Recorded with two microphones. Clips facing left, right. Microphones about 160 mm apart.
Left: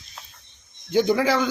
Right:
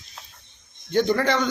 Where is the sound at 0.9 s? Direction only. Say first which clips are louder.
Left 1 dB; 10° left (ahead or behind).